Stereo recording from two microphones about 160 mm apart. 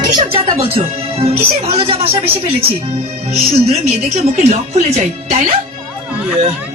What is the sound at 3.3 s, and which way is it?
Speech, 40° right (ahead or behind).